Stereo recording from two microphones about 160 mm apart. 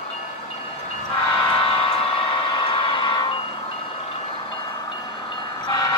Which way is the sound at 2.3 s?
30° left (ahead or behind).